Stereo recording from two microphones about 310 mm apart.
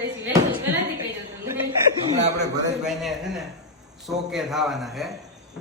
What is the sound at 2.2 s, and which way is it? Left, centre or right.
Speech, right.